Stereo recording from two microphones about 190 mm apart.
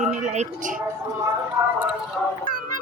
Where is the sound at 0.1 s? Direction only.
40° right (ahead or behind).